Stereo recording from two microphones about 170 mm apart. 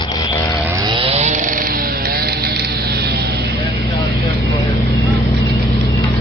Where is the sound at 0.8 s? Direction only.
30° right (ahead or behind); by 3.1 s 70° right (ahead or behind).